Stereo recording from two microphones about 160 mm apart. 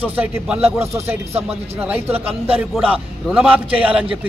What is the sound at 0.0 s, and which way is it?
A man's voice, 10° right (ahead or behind).